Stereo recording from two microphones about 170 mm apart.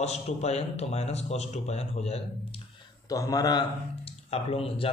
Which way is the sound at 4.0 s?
35° left (ahead or behind).